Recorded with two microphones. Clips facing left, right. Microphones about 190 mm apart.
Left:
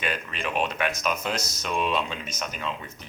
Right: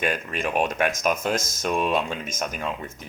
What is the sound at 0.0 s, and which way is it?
Speech, 45° right (ahead or behind).